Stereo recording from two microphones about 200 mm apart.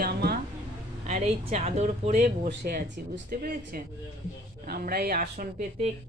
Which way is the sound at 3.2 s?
45° right (ahead or behind).